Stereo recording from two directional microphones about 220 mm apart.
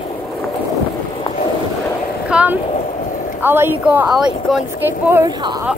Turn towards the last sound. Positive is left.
turn(degrees=-10)  # may be behind; listen again after turning